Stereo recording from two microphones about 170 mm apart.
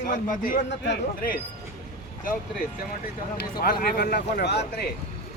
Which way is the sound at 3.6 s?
65° left (ahead or behind).